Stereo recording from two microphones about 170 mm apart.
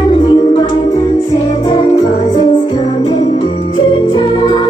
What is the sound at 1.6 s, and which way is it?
Jingle bell, 25° left (ahead or behind).